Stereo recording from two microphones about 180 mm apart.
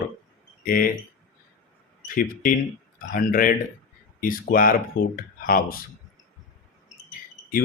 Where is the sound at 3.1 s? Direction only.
50° left (ahead or behind).